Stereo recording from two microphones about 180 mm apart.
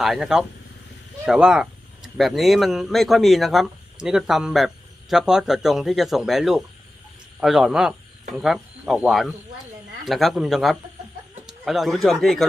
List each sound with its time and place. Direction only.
0.0 s speech: centre (ahead or behind)